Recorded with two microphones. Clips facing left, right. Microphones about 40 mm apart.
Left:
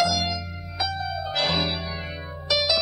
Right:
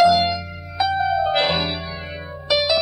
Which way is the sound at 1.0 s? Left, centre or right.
Right.